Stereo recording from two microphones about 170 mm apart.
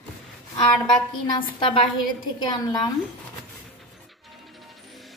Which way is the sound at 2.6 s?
25° left (ahead or behind).